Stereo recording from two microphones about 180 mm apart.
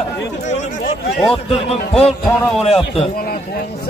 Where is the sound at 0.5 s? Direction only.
40° left (ahead or behind).